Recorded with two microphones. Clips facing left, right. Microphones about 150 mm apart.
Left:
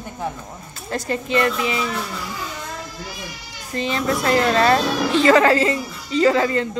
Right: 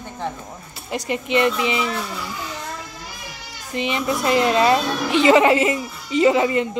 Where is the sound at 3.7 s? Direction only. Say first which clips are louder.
Left 1 dB; 15° right (ahead or behind).